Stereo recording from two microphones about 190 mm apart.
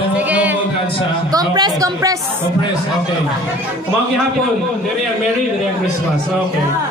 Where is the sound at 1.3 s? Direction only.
20° right (ahead or behind).